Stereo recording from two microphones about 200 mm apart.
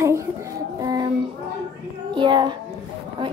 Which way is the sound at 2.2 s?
20° right (ahead or behind).